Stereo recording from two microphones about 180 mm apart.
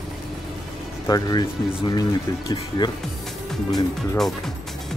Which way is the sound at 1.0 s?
20° left (ahead or behind).